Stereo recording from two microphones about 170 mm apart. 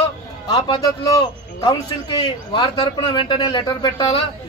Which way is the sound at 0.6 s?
25° left (ahead or behind).